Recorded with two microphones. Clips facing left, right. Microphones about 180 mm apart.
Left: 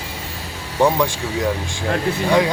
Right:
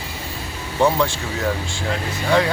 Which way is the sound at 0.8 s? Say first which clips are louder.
Left 1 dB; 15° left (ahead or behind).